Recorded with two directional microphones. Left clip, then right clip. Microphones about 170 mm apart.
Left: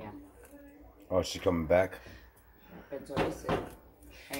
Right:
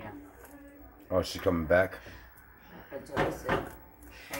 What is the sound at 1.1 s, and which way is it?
Speech, 15° left (ahead or behind).